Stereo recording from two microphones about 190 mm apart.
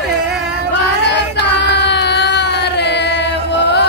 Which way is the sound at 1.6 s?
60° left (ahead or behind).